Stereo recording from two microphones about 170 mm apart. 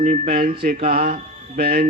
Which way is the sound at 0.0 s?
45° right (ahead or behind).